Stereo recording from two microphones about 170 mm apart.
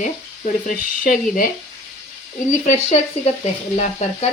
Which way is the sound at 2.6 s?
40° left (ahead or behind).